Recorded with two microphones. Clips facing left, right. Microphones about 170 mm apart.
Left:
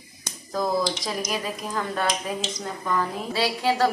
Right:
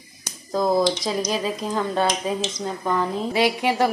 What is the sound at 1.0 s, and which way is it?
Speech, 25° right (ahead or behind).